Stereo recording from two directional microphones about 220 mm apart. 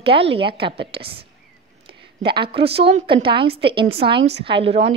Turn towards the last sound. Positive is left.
turn(degrees=-25)  # may be behind; listen again after turning